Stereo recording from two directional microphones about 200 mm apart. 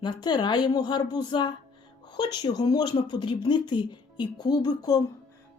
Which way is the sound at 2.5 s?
20° left (ahead or behind).